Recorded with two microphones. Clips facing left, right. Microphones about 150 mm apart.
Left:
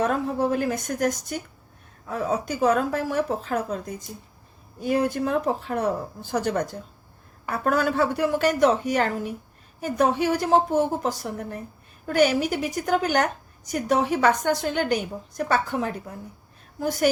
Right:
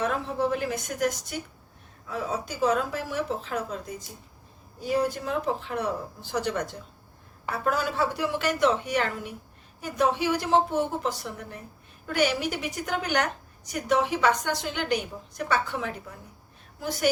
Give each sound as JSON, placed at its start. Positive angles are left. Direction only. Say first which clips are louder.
{"t": 0.0, "sound": "a woman's voice", "louder": "left 4 dB", "side_deg": 45}
{"t": 4.8, "sound": "a woman's voice", "louder": "left 3 dB", "side_deg": 55}